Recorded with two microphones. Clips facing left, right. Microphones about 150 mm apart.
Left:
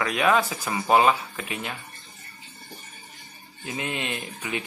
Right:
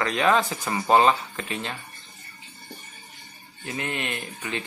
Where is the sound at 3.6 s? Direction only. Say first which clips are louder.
Even; 20° left (ahead or behind).